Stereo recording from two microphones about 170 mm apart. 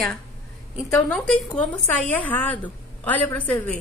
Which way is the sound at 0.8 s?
5° left (ahead or behind).